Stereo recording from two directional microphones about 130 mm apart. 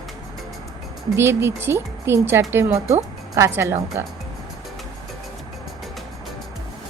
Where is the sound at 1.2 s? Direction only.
20° right (ahead or behind).